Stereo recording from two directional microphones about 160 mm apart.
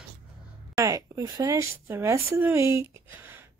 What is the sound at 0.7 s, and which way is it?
Speech, 20° right (ahead or behind).